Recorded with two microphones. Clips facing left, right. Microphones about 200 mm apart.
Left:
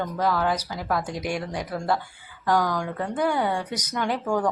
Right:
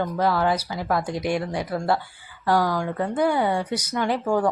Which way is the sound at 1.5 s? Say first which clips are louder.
Right 3 dB; 10° right (ahead or behind).